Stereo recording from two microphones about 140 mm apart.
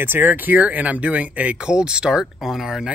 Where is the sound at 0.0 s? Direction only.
15° right (ahead or behind).